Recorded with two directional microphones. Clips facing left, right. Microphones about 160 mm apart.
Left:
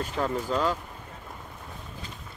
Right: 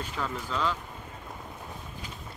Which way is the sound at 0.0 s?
40° left (ahead or behind).